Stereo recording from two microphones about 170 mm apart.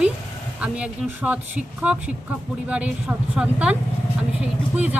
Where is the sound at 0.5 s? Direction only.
5° right (ahead or behind).